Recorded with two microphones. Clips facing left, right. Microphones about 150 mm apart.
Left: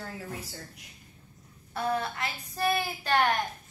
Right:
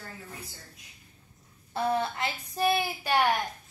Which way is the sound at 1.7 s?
30° right (ahead or behind).